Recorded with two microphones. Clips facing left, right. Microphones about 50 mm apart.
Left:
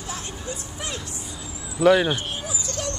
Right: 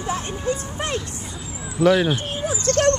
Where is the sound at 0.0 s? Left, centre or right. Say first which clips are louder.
Right 8 dB; right.